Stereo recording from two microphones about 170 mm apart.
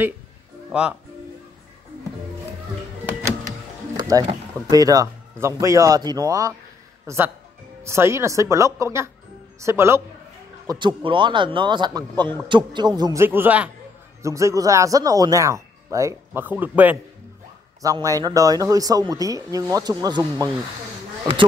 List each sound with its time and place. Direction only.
0.7 s speech: 5° right (ahead or behind)
3.1 s music: 10° right (ahead or behind)
4.6 s a man's voice: 20° right (ahead or behind)
10.7 s a man's voice: 25° right (ahead or behind); by 17.0 s 10° right (ahead or behind)
17.8 s a man's voice: 20° right (ahead or behind)